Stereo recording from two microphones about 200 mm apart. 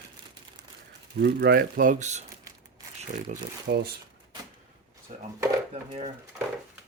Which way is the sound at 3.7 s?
60° right (ahead or behind).